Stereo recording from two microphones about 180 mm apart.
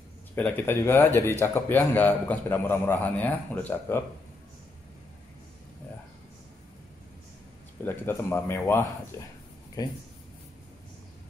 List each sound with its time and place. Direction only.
0.4 s a man's voice: 10° left (ahead or behind)
7.8 s a man's voice: 10° left (ahead or behind)